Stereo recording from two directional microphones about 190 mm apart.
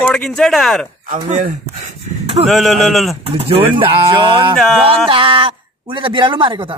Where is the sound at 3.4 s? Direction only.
30° right (ahead or behind).